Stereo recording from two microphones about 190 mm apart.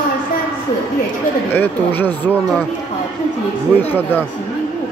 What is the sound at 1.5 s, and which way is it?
Speech, 10° left (ahead or behind).